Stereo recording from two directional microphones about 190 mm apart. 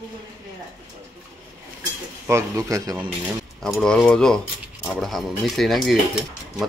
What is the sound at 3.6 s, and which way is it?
Speech, centre (ahead or behind).